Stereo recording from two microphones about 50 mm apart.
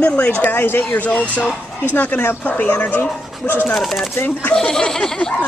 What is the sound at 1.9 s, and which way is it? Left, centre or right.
Speech, left.